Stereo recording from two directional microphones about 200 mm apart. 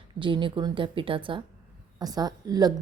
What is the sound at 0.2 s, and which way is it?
A woman's voice, 25° right (ahead or behind).